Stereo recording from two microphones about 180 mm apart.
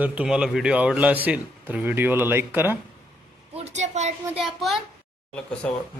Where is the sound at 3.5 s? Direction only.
40° right (ahead or behind).